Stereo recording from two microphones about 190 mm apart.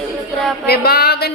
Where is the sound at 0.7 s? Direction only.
55° left (ahead or behind).